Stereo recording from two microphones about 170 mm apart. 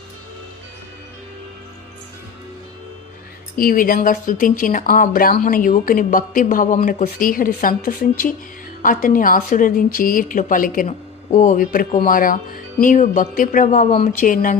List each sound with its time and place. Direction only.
3.5 s a woman's voice: 55° left (ahead or behind)